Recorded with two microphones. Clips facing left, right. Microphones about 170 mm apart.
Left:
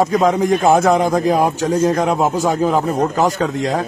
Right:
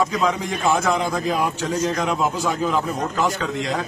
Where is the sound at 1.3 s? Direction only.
35° left (ahead or behind).